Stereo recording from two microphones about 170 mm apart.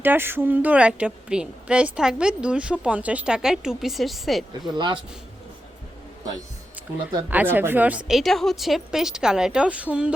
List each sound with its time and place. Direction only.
0.0 s a woman's voice: 10° right (ahead or behind)
4.6 s speech: 25° right (ahead or behind)
7.3 s a woman's voice: 10° right (ahead or behind)